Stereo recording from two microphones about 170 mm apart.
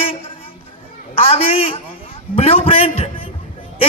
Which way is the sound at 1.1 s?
35° left (ahead or behind).